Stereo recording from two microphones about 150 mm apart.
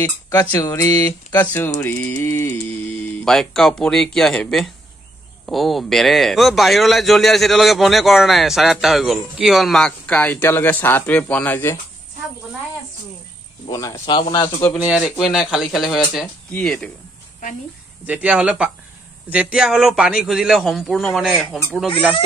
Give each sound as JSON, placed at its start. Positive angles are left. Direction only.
{"t": 0.3, "sound": "speech", "side_deg": 25}
{"t": 3.3, "sound": "a man's voice", "side_deg": 0}
{"t": 13.7, "sound": "speech", "side_deg": 25}
{"t": 14.8, "sound": "a man's voice", "side_deg": -10}
{"t": 18.0, "sound": "a man's voice", "side_deg": -10}